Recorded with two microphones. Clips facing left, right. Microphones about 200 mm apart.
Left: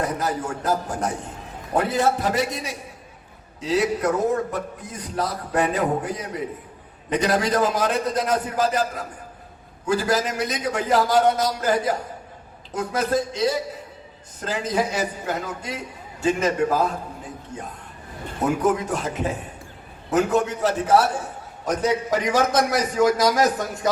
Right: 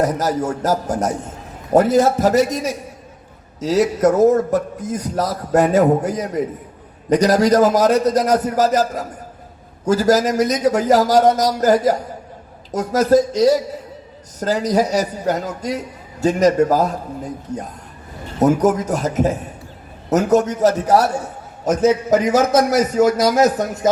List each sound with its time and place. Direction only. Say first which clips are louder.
0.0 s a man's voice: right 7 dB; 40° right (ahead or behind)
22.4 s a man's voice: right 6 dB; 45° right (ahead or behind)